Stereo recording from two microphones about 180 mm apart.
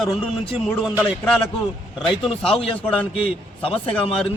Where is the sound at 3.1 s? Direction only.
30° left (ahead or behind).